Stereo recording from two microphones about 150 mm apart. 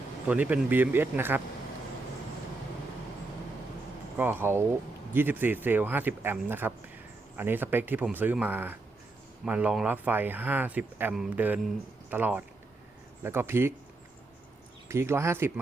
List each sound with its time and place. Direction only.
0.3 s speech: 10° right (ahead or behind)
4.2 s speech: 15° right (ahead or behind)
14.8 s speech: 15° right (ahead or behind)